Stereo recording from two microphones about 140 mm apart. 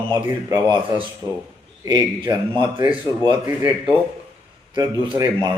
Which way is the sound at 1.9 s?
30° right (ahead or behind).